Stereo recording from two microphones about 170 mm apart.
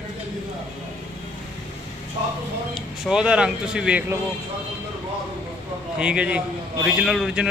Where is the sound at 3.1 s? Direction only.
5° right (ahead or behind).